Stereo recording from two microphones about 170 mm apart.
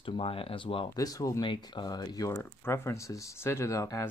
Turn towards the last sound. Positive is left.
turn(degrees=15)  # may be behind; listen again after turning